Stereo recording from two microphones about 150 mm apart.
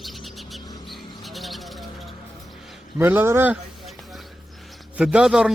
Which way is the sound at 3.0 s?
15° right (ahead or behind).